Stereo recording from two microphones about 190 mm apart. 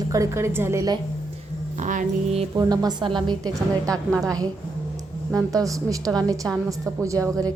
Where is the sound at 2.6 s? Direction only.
20° right (ahead or behind).